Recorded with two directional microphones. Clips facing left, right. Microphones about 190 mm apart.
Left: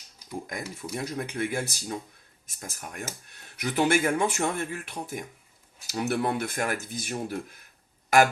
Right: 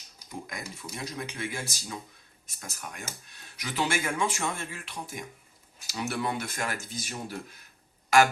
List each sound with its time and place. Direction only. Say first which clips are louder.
0.4 s speech: left 4 dB; 50° left (ahead or behind)